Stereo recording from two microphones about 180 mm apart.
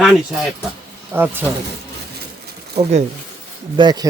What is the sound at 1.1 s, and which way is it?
Speech, 10° right (ahead or behind).